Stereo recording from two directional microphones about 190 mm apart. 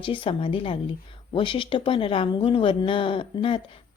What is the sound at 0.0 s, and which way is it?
Speech, 30° left (ahead or behind).